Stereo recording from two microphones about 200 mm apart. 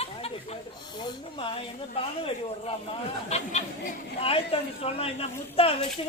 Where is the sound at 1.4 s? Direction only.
30° left (ahead or behind).